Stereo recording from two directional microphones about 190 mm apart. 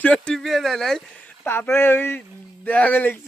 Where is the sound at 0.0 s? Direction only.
5° left (ahead or behind).